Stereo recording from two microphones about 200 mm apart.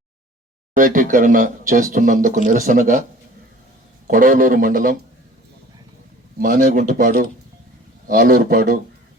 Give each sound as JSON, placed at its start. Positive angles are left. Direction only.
{"t": 0.8, "sound": "speech", "side_deg": -40}
{"t": 4.0, "sound": "speech", "side_deg": -40}
{"t": 6.4, "sound": "speech", "side_deg": -40}